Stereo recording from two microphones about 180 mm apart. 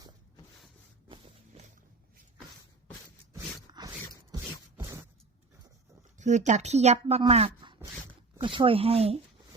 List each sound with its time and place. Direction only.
1.0 s walk: 30° right (ahead or behind)
3.8 s a sound: 25° right (ahead or behind)
6.1 s speech: 40° right (ahead or behind)